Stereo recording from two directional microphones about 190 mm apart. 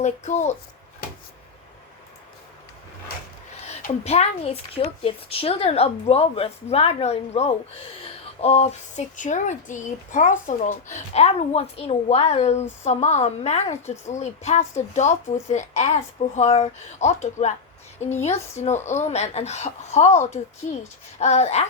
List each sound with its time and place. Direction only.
0.0 s speech: 35° left (ahead or behind)
4.0 s speech: 30° left (ahead or behind)